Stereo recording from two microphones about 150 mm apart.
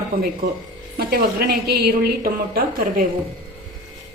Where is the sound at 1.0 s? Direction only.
90° right.